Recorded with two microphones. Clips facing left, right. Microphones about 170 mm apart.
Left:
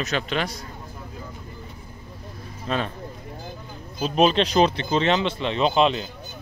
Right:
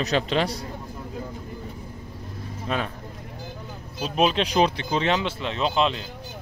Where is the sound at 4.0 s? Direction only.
5° right (ahead or behind).